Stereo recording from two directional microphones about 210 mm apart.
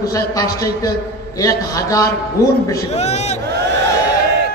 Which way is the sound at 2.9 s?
30° left (ahead or behind).